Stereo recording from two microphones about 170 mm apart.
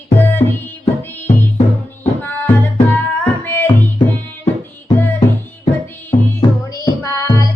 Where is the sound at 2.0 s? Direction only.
10° left (ahead or behind).